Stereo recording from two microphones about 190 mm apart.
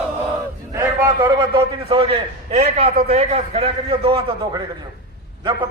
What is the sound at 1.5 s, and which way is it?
A man's voice, 25° right (ahead or behind).